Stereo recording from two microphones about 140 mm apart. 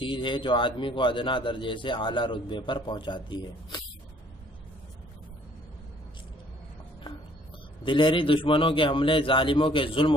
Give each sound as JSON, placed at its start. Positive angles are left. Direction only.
{"t": 0.0, "sound": "a man's voice", "side_deg": 35}
{"t": 7.8, "sound": "a man's voice", "side_deg": 35}